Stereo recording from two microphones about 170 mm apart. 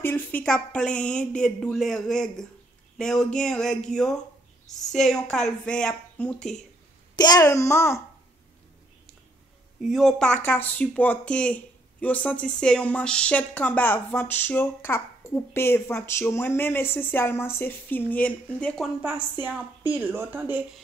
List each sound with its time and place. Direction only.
0.0 s speech: 10° left (ahead or behind)
7.2 s speech: 20° left (ahead or behind)
9.8 s speech: centre (ahead or behind)
19.4 s a woman's voice: 10° right (ahead or behind)